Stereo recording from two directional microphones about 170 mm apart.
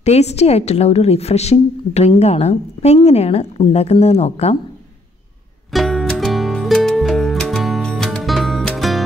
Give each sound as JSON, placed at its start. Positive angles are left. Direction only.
{"t": 0.0, "sound": "a woman's voice", "side_deg": 40}
{"t": 5.7, "sound": "music", "side_deg": 0}